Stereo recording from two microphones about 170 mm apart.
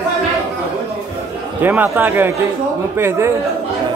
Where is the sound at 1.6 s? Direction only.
10° right (ahead or behind).